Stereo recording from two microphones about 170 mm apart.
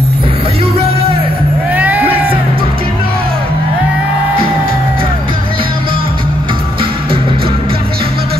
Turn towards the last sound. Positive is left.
turn(degrees=-30)  # may be behind; listen again after turning